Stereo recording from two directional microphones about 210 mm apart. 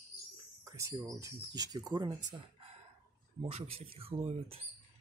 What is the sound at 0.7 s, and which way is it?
Speech, 15° right (ahead or behind).